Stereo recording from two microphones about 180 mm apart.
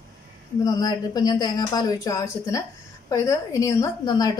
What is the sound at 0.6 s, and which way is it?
A woman's voice, 20° left (ahead or behind).